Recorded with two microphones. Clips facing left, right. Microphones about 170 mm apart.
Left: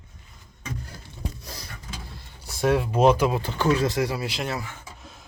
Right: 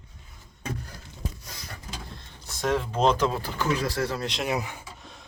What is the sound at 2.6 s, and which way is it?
Speech, 10° left (ahead or behind).